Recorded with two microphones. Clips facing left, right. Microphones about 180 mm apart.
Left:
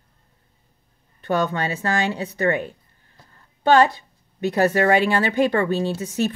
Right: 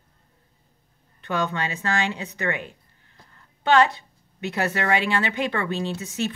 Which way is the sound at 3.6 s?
40° left (ahead or behind).